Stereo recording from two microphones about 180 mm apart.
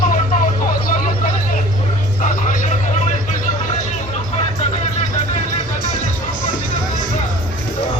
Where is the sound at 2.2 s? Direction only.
45° left (ahead or behind).